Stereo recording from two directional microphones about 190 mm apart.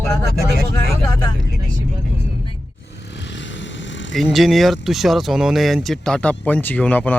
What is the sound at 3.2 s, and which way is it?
Vehicle, 70° left (ahead or behind).